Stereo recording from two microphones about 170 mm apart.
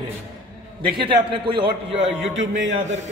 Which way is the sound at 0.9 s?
30° right (ahead or behind).